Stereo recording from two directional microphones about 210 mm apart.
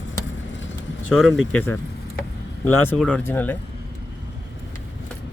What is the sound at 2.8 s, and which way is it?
Speech, 5° left (ahead or behind).